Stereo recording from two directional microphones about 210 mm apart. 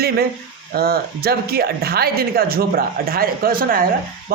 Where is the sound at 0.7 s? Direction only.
45° right (ahead or behind).